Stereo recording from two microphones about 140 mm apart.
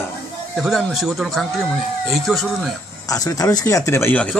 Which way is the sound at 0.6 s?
Centre (ahead or behind).